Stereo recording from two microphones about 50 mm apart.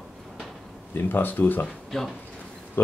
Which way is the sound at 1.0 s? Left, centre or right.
Left.